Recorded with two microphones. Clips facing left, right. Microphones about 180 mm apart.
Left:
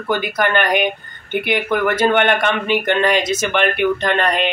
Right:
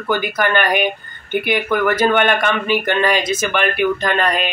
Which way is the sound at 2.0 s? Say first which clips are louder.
Even; 20° left (ahead or behind).